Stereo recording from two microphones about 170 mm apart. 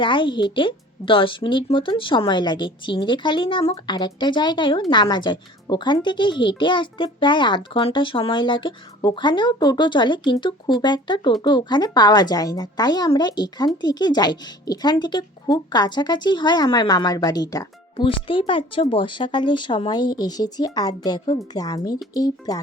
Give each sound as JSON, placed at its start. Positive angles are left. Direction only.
{"t": 0.0, "sound": "speech", "side_deg": 30}